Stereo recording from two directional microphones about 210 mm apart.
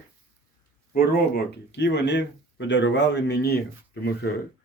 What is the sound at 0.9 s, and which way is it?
Speech, 45° left (ahead or behind).